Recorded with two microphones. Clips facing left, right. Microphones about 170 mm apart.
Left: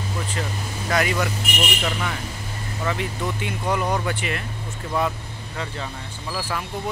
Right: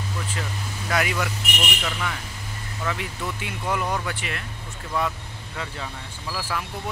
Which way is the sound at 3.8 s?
20° left (ahead or behind).